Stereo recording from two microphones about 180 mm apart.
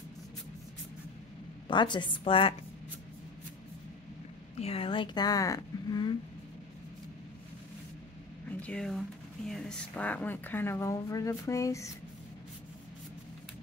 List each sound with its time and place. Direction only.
1.7 s a woman's voice: 25° left (ahead or behind)
4.6 s a woman's voice: 35° left (ahead or behind)
8.5 s speech: 10° left (ahead or behind)